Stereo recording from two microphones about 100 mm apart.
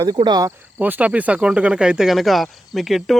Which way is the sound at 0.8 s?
15° right (ahead or behind).